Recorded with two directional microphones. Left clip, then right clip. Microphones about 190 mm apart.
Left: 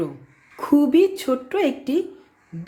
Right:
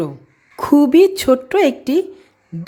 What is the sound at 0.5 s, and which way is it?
Speech, 35° right (ahead or behind).